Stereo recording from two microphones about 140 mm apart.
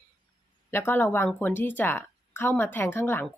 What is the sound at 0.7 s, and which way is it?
A woman's voice, 15° left (ahead or behind).